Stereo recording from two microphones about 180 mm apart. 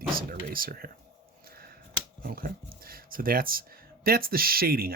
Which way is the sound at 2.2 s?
55° right (ahead or behind).